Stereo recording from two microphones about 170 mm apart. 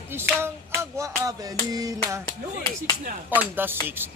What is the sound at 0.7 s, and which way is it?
Music, 20° right (ahead or behind).